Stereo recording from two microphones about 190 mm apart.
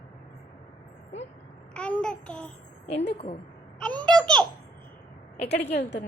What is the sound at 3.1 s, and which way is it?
Speech, 30° left (ahead or behind).